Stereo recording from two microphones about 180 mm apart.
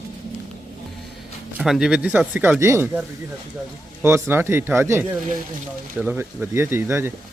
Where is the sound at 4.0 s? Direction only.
15° right (ahead or behind).